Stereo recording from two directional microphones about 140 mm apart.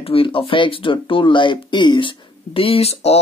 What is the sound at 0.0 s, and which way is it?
Speech, 40° left (ahead or behind).